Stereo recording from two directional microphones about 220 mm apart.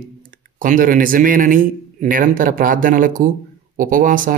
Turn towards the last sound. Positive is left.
turn(degrees=-40)  # may be behind; listen again after turning